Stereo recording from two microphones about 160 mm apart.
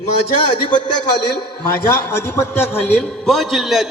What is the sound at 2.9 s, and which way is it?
A man's voice, 5° left (ahead or behind).